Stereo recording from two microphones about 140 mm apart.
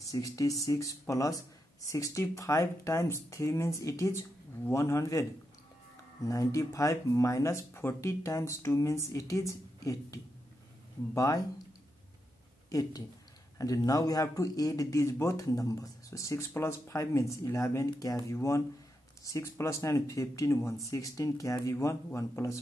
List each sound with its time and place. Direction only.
0.0 s speech: 25° left (ahead or behind)
6.2 s speech: 25° left (ahead or behind)
12.6 s speech: 25° left (ahead or behind)